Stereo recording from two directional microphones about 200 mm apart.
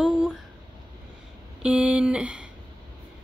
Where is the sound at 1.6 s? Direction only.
5° right (ahead or behind).